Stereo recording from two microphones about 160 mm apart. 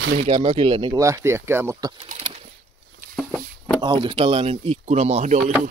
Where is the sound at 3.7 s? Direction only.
30° right (ahead or behind); by 5.5 s 45° right (ahead or behind).